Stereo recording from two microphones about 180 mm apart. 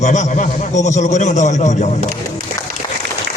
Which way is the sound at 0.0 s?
40° left (ahead or behind).